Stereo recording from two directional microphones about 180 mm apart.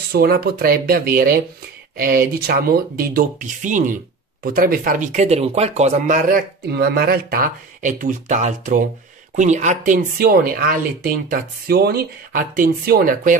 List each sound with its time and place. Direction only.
0.1 s speech: 55° right (ahead or behind)
6.7 s speech: 60° right (ahead or behind)